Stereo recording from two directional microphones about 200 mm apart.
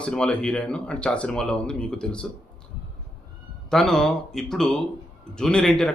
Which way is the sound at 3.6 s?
5° left (ahead or behind).